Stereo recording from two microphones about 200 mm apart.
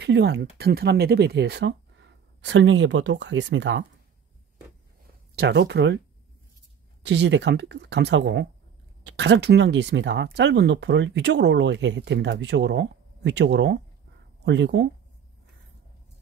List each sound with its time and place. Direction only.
0.0 s speech: 60° right (ahead or behind)
5.3 s speech: 55° right (ahead or behind)
7.0 s speech: 60° right (ahead or behind)